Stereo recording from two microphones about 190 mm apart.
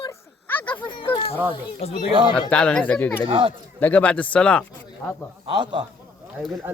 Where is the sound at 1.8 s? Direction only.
35° left (ahead or behind).